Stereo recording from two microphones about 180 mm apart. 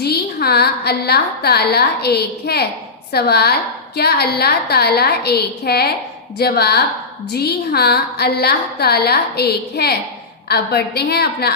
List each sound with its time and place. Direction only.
0.0 s a woman's voice: 60° left (ahead or behind)